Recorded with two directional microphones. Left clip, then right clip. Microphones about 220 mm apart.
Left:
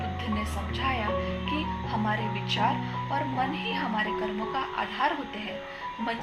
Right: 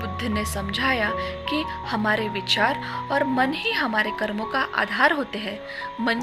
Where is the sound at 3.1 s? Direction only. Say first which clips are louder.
Right 7 dB; 40° right (ahead or behind).